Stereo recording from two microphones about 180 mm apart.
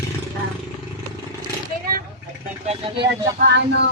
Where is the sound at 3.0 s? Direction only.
70° right (ahead or behind).